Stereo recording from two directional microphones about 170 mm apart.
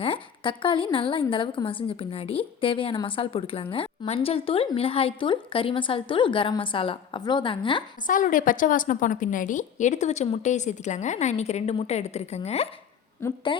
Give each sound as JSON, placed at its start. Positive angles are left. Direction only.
{"t": 0.0, "sound": "a woman's voice", "side_deg": 30}
{"t": 8.0, "sound": "a woman's voice", "side_deg": 50}